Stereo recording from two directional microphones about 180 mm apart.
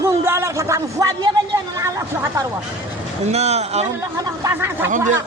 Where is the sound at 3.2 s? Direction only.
35° right (ahead or behind).